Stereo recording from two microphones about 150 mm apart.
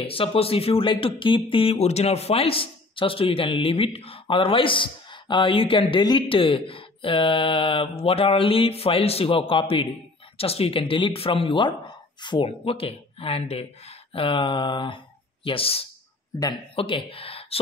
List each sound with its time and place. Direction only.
0.0 s speech: 40° left (ahead or behind)